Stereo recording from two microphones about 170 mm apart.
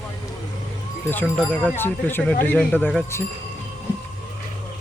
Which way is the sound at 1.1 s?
10° left (ahead or behind).